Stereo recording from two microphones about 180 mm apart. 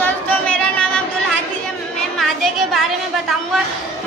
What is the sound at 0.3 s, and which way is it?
Music, 5° left (ahead or behind).